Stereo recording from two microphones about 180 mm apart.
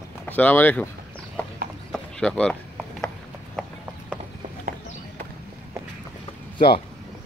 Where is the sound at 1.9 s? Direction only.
5° left (ahead or behind).